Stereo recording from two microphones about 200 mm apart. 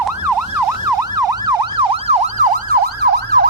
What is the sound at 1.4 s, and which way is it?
Emergency vehicle, 30° right (ahead or behind).